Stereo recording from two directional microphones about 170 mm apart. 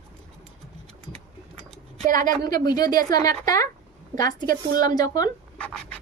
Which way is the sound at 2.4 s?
25° left (ahead or behind).